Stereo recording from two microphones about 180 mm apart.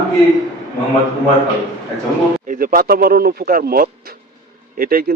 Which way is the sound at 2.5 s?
50° right (ahead or behind).